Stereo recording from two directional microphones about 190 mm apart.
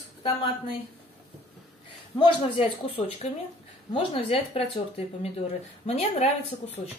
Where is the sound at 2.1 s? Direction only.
25° left (ahead or behind).